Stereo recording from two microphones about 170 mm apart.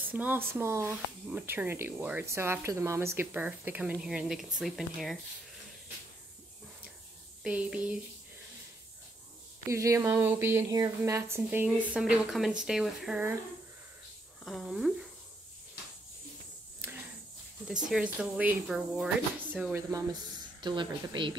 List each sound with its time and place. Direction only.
0.1 s speech: 10° right (ahead or behind)
7.4 s speech: 5° right (ahead or behind)
9.7 s speech: 15° right (ahead or behind)
14.4 s speech: centre (ahead or behind)
17.6 s speech: 5° right (ahead or behind)
20.6 s speech: 25° right (ahead or behind)